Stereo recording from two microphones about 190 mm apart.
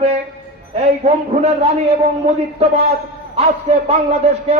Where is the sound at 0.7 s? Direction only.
35° right (ahead or behind).